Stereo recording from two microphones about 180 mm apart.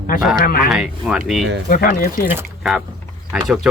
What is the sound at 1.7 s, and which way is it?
Speech, 50° left (ahead or behind).